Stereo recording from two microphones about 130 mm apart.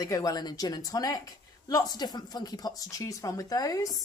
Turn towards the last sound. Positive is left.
turn(degrees=25)  # may be behind; listen again after turning